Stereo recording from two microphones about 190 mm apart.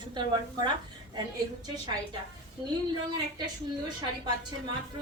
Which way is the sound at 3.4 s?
20° right (ahead or behind).